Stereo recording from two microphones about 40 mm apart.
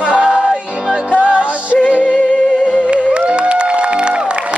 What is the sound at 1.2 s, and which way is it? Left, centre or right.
Music, right.